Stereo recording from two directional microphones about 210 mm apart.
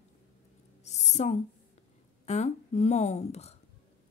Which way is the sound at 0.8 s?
35° left (ahead or behind).